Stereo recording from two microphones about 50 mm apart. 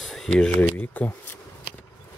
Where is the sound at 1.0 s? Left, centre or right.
Left.